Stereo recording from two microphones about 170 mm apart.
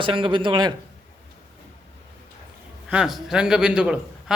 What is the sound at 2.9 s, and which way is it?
A man's voice, 5° right (ahead or behind).